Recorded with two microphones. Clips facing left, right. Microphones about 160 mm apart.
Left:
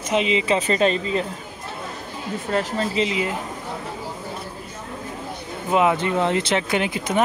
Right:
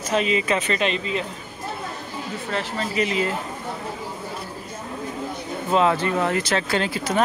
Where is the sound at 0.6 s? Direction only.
35° left (ahead or behind).